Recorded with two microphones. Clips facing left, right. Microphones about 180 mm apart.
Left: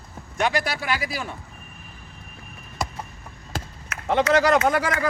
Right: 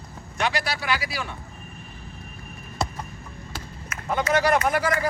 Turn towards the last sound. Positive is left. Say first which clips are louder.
# left 2 dB
turn(degrees=90)